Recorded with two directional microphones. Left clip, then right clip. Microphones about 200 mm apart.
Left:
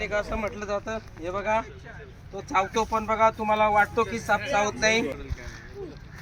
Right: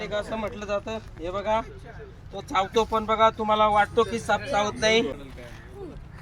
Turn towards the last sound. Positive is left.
turn(degrees=-10)  # may be behind; listen again after turning